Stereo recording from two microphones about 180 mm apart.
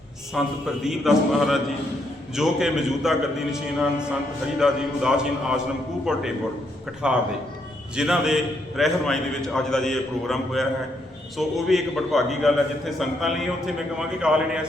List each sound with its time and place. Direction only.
0.3 s a man's voice: centre (ahead or behind)